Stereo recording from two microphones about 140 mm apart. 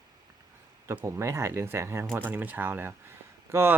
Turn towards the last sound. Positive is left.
turn(degrees=-15)  # may be behind; listen again after turning